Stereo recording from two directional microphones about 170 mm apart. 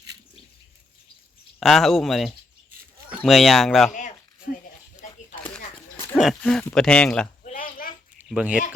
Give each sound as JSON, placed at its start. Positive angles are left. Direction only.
{"t": 1.5, "sound": "speech", "side_deg": 0}
{"t": 6.1, "sound": "speech", "side_deg": 0}
{"t": 7.4, "sound": "a sound", "side_deg": 55}
{"t": 8.3, "sound": "speech", "side_deg": -5}